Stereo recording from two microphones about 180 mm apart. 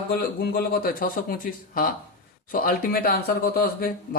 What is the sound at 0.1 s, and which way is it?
Speech, 60° left (ahead or behind).